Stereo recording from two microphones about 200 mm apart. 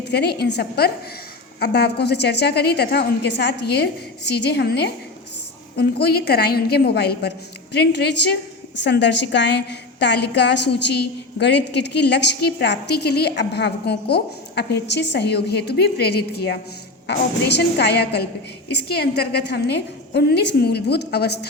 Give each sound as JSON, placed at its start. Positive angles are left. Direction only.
{"t": 0.0, "sound": "a woman's voice", "side_deg": 55}